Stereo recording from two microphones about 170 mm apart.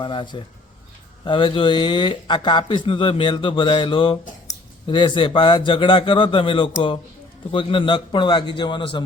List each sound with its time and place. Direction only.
0.0 s speech: 30° left (ahead or behind)